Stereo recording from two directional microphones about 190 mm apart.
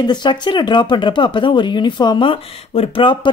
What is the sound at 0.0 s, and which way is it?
A woman's voice, 25° left (ahead or behind).